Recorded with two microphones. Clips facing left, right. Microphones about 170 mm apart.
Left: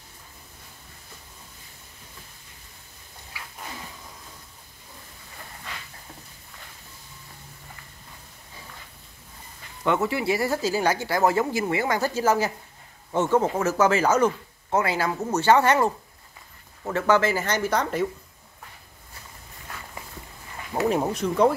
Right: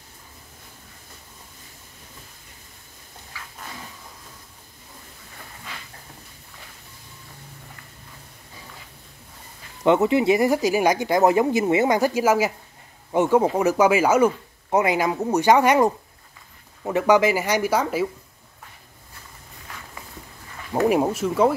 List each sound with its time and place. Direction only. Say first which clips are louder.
9.8 s speech: right 6 dB; 20° right (ahead or behind)
20.8 s speech: right 4 dB; 10° right (ahead or behind)